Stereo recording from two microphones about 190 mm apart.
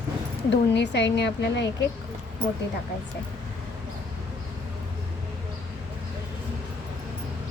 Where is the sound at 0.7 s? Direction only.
65° left (ahead or behind).